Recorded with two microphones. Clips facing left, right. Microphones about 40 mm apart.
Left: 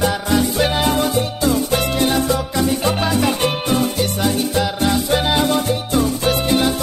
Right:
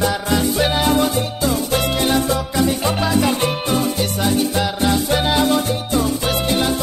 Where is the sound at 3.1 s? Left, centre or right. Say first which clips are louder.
Even; centre.